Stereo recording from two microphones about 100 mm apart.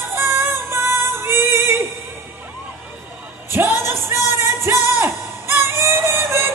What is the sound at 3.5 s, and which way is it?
Music, 25° right (ahead or behind).